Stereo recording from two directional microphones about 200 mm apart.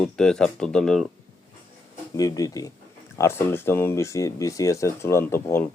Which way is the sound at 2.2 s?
20° left (ahead or behind).